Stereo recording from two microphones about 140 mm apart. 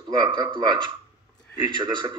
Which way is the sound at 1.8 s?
35° right (ahead or behind).